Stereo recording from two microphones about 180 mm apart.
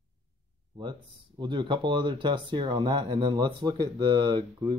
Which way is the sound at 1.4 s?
25° right (ahead or behind).